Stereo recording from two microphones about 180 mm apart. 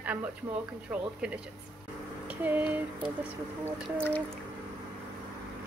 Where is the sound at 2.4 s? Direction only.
10° right (ahead or behind).